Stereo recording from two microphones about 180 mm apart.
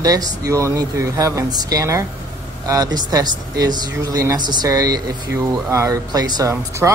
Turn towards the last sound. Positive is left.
turn(degrees=-20)  # may be behind; listen again after turning